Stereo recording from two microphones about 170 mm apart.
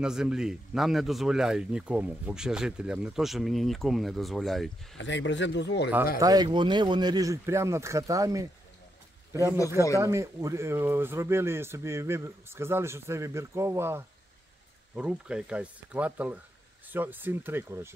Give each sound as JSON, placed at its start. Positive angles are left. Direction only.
{"t": 0.0, "sound": "speech", "side_deg": -5}
{"t": 4.9, "sound": "speech", "side_deg": 90}
{"t": 6.1, "sound": "a man's voice", "side_deg": -20}